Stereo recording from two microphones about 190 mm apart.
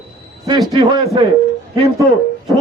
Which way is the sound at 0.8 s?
20° right (ahead or behind).